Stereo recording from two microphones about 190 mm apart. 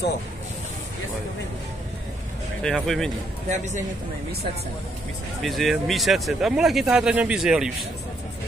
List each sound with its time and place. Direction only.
2.6 s speech: centre (ahead or behind)
3.4 s a man's voice: 40° right (ahead or behind)
5.4 s speech: centre (ahead or behind)